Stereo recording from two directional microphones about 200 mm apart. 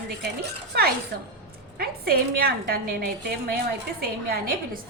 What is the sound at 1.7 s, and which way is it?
A woman's voice, 50° right (ahead or behind).